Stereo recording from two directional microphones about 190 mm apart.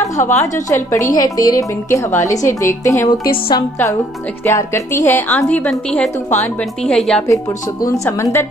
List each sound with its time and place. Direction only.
0.2 s a woman's voice: 35° left (ahead or behind)
0.7 s a woman's voice: 15° left (ahead or behind)
7.9 s a woman's voice: 15° left (ahead or behind)